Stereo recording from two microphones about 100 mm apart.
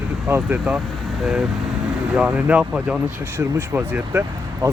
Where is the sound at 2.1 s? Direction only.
10° right (ahead or behind).